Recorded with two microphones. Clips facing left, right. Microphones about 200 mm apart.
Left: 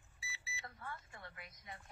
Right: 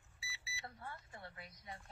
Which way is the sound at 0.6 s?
30° right (ahead or behind).